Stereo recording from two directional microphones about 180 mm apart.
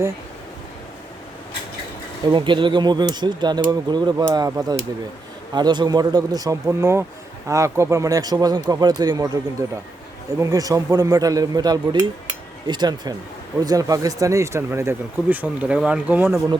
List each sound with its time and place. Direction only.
2.3 s a man's voice: 25° right (ahead or behind); by 16.4 s 10° right (ahead or behind)